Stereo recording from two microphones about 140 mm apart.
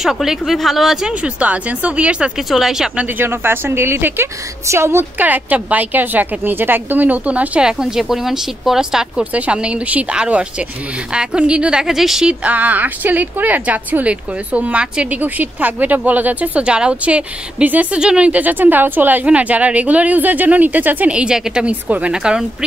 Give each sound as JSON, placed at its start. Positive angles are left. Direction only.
{"t": 0.0, "sound": "speech", "side_deg": -5}
{"t": 3.2, "sound": "a woman's voice", "side_deg": -15}